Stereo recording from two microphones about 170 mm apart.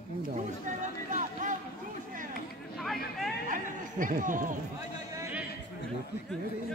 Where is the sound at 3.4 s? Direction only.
50° right (ahead or behind).